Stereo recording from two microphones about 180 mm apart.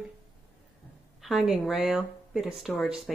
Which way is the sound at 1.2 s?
Centre (ahead or behind).